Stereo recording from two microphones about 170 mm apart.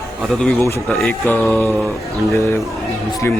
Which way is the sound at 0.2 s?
Centre (ahead or behind).